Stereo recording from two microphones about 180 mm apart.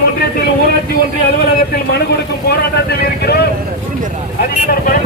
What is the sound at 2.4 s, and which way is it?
Speech, 65° left (ahead or behind).